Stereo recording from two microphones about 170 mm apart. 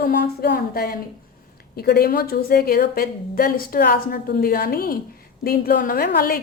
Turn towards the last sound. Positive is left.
turn(degrees=65)  # may be behind; listen again after turning